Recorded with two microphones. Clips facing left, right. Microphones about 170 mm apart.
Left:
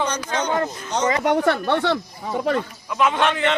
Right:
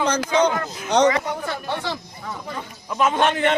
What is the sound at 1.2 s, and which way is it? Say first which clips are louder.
Speech: left 9 dB; 75° left (ahead or behind).